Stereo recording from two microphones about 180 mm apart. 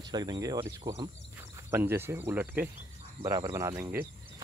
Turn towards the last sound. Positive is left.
turn(degrees=-10)  # may be behind; listen again after turning